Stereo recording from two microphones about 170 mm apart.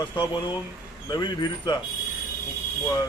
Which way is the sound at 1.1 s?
25° left (ahead or behind).